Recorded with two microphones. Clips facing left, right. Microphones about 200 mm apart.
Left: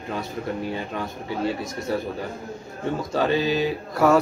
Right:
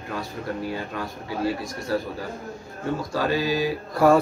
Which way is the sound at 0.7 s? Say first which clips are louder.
Left 1 dB; 25° left (ahead or behind).